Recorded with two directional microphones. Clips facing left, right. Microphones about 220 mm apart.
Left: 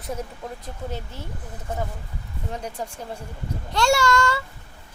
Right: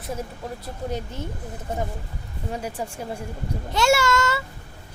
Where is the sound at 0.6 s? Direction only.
15° right (ahead or behind).